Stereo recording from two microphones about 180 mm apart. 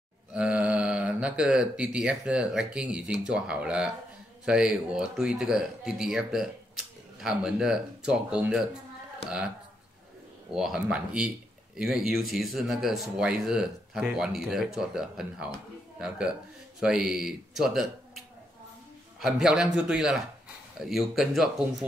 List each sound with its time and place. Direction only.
0.3 s speech: 5° right (ahead or behind)
9.2 s speech: 35° left (ahead or behind)
10.5 s speech: 5° right (ahead or behind)
16.8 s speech: 5° right (ahead or behind)